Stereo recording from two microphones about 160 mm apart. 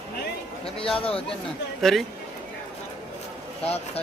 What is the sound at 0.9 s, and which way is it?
Speech, 35° left (ahead or behind).